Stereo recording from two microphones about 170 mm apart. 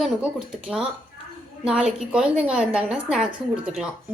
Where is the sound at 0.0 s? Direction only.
5° right (ahead or behind).